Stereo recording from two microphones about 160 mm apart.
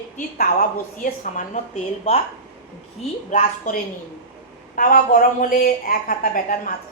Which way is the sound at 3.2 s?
55° left (ahead or behind).